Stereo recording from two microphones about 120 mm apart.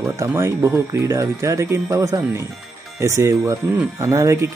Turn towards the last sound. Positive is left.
turn(degrees=-25)  # may be behind; listen again after turning